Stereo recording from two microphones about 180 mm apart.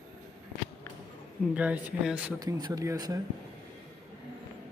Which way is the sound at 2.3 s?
20° right (ahead or behind).